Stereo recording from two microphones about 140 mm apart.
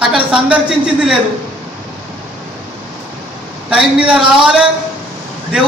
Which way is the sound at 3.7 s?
5° right (ahead or behind).